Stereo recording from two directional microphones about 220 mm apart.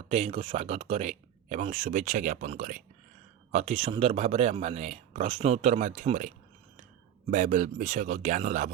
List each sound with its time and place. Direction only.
0.1 s a man's voice: 30° right (ahead or behind)